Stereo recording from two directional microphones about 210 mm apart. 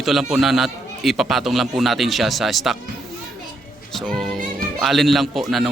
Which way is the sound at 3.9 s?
Centre (ahead or behind).